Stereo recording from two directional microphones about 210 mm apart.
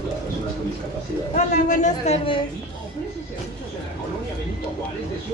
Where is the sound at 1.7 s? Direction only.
35° left (ahead or behind).